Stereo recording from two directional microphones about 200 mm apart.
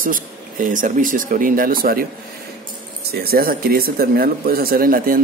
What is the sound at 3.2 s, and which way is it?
Speech, 50° right (ahead or behind).